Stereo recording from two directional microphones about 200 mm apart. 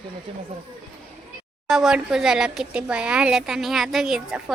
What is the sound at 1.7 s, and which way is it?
Speech, centre (ahead or behind).